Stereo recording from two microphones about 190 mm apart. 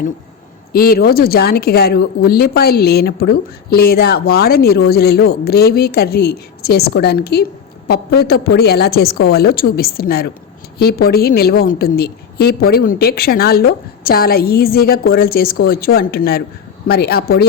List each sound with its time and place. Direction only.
0.7 s a woman's voice: 50° left (ahead or behind)